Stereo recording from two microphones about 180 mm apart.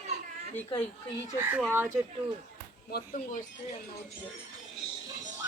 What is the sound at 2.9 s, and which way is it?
Speech, 45° left (ahead or behind).